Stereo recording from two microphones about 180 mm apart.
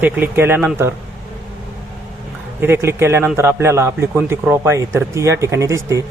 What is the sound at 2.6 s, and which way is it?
Speech, 15° right (ahead or behind).